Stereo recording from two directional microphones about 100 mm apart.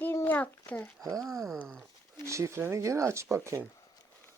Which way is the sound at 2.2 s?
30° right (ahead or behind).